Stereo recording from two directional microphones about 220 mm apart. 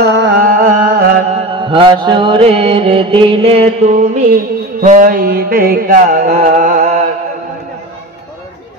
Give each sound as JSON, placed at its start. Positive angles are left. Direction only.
{"t": 0.0, "sound": "carnatic music", "side_deg": -50}
{"t": 1.3, "sound": "mantra", "side_deg": -25}
{"t": 4.7, "sound": "music", "side_deg": -35}